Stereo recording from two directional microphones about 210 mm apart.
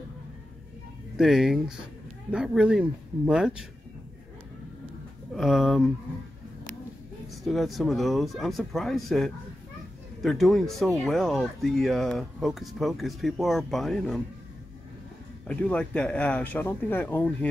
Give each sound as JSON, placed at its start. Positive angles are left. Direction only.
{"t": 1.1, "sound": "speech", "side_deg": 0}
{"t": 5.3, "sound": "speech", "side_deg": 0}
{"t": 7.4, "sound": "speech", "side_deg": 0}
{"t": 15.4, "sound": "speech", "side_deg": 5}